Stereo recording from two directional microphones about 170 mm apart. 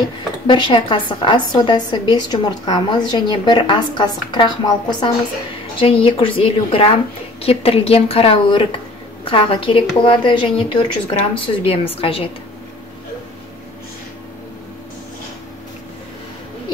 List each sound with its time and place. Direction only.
0.5 s a woman's voice: 30° left (ahead or behind)